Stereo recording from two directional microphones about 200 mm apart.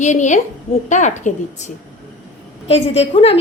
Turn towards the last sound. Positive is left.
turn(degrees=30)  # may be behind; listen again after turning